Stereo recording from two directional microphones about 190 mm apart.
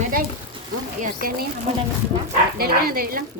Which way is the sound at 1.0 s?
50° right (ahead or behind).